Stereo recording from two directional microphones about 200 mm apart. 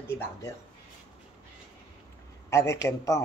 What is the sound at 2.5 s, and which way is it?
Speech, 15° left (ahead or behind).